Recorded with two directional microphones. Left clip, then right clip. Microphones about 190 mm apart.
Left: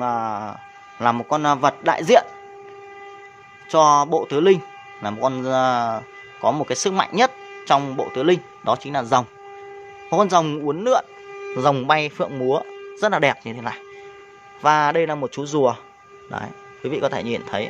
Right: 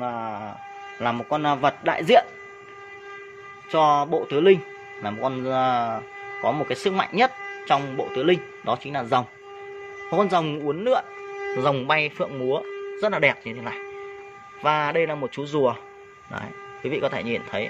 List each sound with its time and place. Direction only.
0.0 s a man's voice: 30° left (ahead or behind)
3.7 s speech: 25° left (ahead or behind)